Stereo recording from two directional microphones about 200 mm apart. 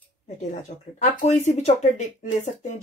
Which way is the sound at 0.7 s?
35° left (ahead or behind).